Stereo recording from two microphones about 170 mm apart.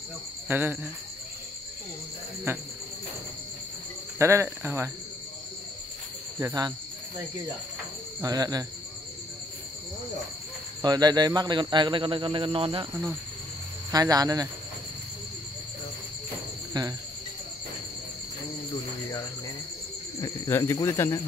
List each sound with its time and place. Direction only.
0.5 s cricket: 10° right (ahead or behind)
2.5 s cricket: 15° right (ahead or behind)
4.2 s cricket: 15° right (ahead or behind)
6.4 s speech: 20° right (ahead or behind)
8.2 s speech: 20° right (ahead or behind)
10.8 s speech: 25° right (ahead or behind)
13.9 s speech: 20° right (ahead or behind)
16.8 s speech: 25° right (ahead or behind)
20.2 s speech: 15° left (ahead or behind)